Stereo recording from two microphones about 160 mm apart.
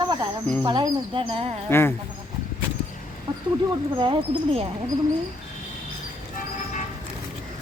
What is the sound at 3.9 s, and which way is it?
Speech, 30° right (ahead or behind).